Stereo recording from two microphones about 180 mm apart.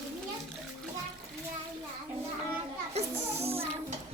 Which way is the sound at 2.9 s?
35° right (ahead or behind).